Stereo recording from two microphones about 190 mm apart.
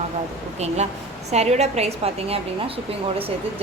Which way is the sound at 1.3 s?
35° right (ahead or behind).